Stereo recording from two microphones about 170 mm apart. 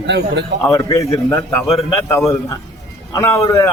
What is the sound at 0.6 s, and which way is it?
A man's voice, 15° left (ahead or behind).